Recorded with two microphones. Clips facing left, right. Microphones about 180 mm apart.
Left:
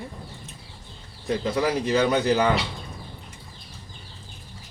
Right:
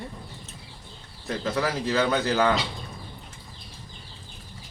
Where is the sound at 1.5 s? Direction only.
15° left (ahead or behind).